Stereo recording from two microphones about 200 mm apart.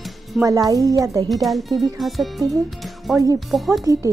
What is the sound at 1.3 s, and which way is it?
Speech, centre (ahead or behind).